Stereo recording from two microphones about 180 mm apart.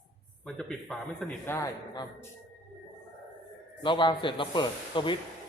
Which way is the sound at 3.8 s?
25° left (ahead or behind).